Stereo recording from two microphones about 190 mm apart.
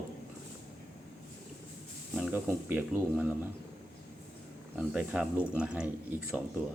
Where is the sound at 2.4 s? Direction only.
10° right (ahead or behind).